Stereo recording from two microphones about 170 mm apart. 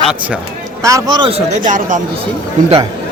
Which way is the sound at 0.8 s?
20° right (ahead or behind).